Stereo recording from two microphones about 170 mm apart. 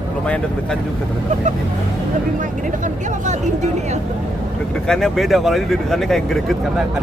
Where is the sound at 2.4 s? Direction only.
50° right (ahead or behind).